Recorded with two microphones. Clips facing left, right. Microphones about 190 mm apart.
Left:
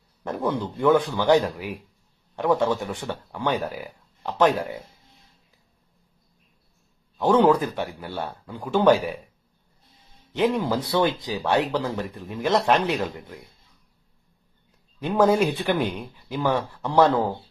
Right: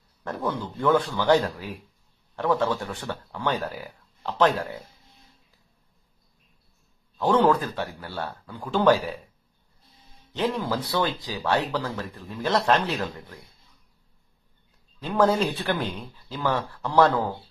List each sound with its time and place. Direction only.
0.2 s speech: 15° left (ahead or behind)
7.2 s speech: 15° left (ahead or behind)
10.3 s speech: 15° left (ahead or behind)
15.0 s speech: 15° left (ahead or behind)